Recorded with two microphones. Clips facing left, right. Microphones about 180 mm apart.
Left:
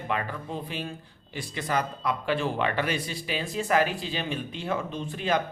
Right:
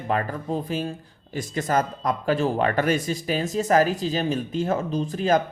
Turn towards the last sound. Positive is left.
turn(degrees=-40)  # may be behind; listen again after turning